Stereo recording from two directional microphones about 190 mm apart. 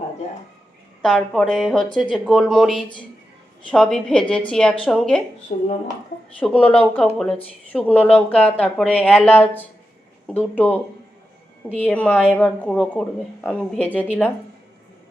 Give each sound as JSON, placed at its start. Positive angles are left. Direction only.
{"t": 1.0, "sound": "a woman's voice", "side_deg": 0}
{"t": 5.5, "sound": "speech", "side_deg": 35}
{"t": 6.4, "sound": "speech", "side_deg": 5}